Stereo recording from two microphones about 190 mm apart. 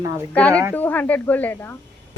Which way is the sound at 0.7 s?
10° left (ahead or behind).